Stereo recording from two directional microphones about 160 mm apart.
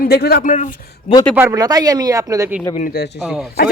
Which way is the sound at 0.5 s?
50° left (ahead or behind).